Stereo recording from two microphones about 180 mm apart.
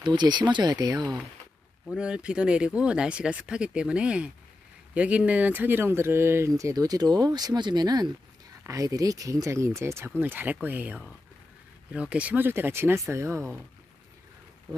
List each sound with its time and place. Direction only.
0.0 s speech: 25° right (ahead or behind)
1.9 s speech: 5° right (ahead or behind)